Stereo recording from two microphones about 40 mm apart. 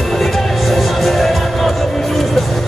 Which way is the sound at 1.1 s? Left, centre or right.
Centre.